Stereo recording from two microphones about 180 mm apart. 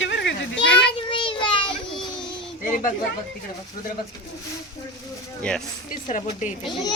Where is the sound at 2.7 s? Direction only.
45° left (ahead or behind).